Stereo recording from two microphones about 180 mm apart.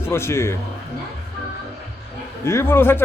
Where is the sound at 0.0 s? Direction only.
15° left (ahead or behind).